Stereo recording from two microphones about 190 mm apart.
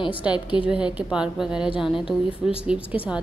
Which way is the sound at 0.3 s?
25° left (ahead or behind).